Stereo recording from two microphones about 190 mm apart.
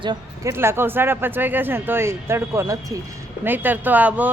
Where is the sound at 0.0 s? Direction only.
20° right (ahead or behind).